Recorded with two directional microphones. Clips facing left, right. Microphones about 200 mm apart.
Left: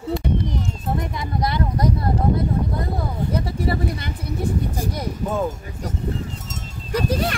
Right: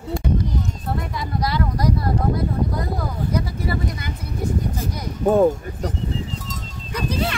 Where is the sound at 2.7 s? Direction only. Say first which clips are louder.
Even; 25° left (ahead or behind).